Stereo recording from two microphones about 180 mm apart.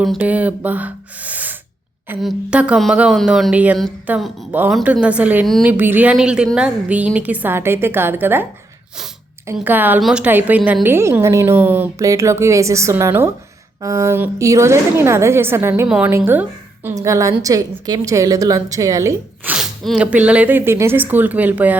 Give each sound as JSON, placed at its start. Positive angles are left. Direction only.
{"t": 0.0, "sound": "a woman's voice", "side_deg": -5}
{"t": 5.7, "sound": "a woman's voice", "side_deg": -10}
{"t": 9.5, "sound": "a woman's voice", "side_deg": -10}
{"t": 19.5, "sound": "a woman's voice", "side_deg": 0}